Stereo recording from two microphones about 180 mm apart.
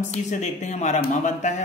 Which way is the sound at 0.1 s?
40° left (ahead or behind).